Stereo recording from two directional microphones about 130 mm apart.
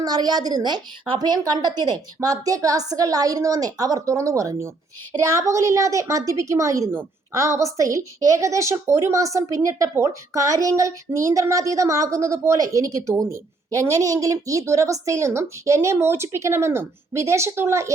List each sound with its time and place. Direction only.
0.0 s a woman's voice: 30° right (ahead or behind)